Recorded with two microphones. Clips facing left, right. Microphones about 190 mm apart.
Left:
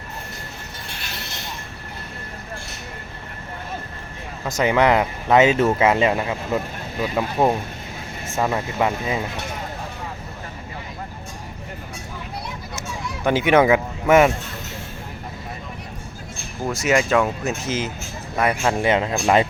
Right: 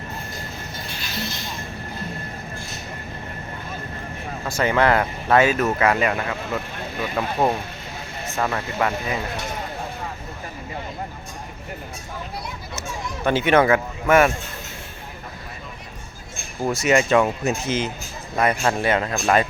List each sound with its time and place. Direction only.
0.9 s music: 60° left (ahead or behind)
4.4 s speech: 15° left (ahead or behind)
13.2 s speech: 15° left (ahead or behind)
16.8 s speech: 5° left (ahead or behind)
18.8 s speech: 15° left (ahead or behind)